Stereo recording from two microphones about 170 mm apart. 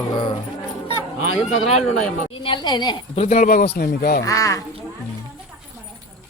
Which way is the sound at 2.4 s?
30° left (ahead or behind).